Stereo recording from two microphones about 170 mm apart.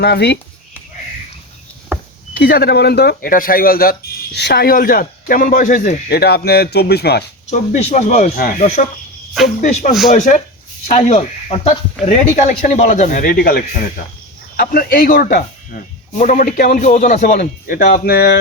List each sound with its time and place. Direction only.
0.0 s speech: 70° left (ahead or behind)
2.3 s speech: 65° left (ahead or behind)
4.4 s speech: 75° left (ahead or behind)
7.7 s speech: 45° left (ahead or behind); by 15.4 s 60° left (ahead or behind)
16.1 s speech: 45° left (ahead or behind)
17.3 s speech: 60° left (ahead or behind)